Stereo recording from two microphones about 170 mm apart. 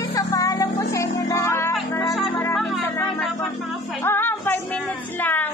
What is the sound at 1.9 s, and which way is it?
Music, 20° left (ahead or behind).